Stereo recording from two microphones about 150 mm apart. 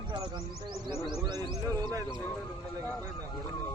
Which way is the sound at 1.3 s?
25° right (ahead or behind).